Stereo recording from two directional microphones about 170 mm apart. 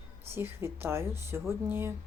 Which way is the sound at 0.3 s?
15° right (ahead or behind).